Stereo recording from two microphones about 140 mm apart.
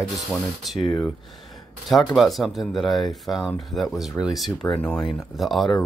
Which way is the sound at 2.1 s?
Centre (ahead or behind).